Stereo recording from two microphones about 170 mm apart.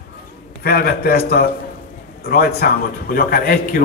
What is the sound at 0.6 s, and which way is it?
A man's voice, 65° left (ahead or behind).